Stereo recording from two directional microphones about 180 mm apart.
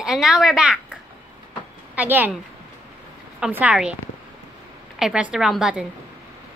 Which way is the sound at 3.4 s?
10° right (ahead or behind).